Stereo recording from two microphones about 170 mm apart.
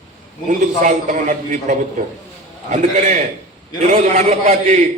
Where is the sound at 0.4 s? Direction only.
45° right (ahead or behind).